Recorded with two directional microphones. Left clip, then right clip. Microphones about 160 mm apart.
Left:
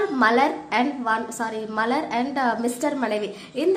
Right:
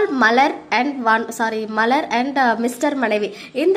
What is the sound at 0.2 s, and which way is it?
A woman's voice, 25° right (ahead or behind).